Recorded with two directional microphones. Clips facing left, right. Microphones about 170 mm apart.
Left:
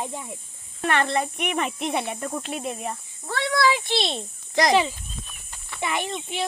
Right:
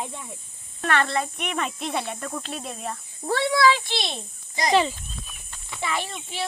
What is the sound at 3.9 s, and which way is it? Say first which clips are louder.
Speech: left 5 dB; 25° left (ahead or behind).